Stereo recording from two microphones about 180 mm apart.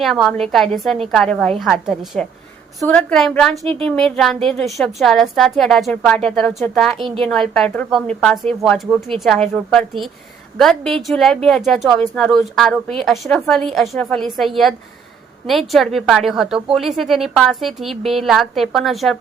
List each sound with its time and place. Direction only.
0.0 s speech: centre (ahead or behind)